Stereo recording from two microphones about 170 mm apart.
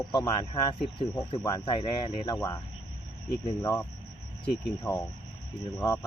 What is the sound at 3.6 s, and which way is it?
Speech, 20° left (ahead or behind).